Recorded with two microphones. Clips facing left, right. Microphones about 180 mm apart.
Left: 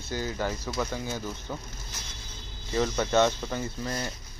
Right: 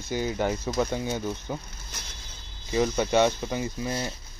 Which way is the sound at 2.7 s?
15° right (ahead or behind).